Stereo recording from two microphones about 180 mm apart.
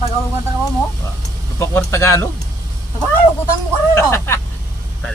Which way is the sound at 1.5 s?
15° left (ahead or behind).